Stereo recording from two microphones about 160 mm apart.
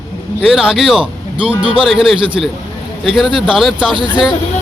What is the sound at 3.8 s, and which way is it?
Speech, 30° right (ahead or behind).